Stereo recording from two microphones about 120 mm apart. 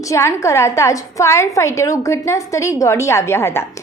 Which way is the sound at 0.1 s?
25° left (ahead or behind).